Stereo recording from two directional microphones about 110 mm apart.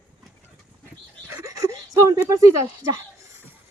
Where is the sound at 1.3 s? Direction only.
30° right (ahead or behind).